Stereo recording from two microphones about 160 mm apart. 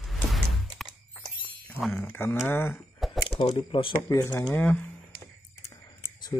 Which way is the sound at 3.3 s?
30° left (ahead or behind).